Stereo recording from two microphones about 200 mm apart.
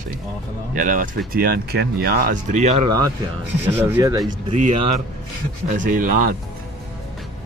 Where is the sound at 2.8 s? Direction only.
20° right (ahead or behind).